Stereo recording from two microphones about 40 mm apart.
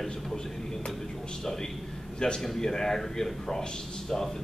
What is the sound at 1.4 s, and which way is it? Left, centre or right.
A man's voice, centre.